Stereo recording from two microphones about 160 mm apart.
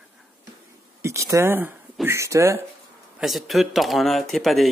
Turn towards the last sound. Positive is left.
turn(degrees=0)  # may be behind; listen again after turning